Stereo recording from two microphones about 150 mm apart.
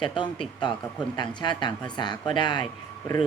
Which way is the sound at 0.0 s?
30° left (ahead or behind).